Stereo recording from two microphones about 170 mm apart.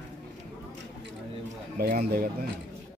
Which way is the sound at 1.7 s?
60° right (ahead or behind).